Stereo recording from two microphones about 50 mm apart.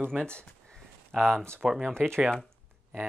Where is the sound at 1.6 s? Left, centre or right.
Centre.